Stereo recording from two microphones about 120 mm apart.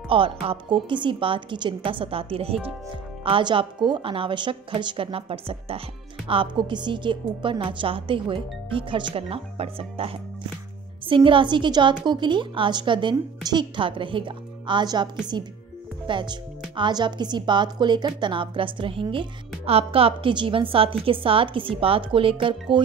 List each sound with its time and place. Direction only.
0.1 s a woman's voice: 50° right (ahead or behind)
16.1 s a woman's voice: 40° right (ahead or behind)